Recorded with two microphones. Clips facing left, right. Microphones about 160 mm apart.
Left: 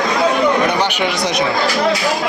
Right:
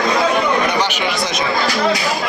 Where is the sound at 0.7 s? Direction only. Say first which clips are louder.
Left 2 dB; 60° left (ahead or behind).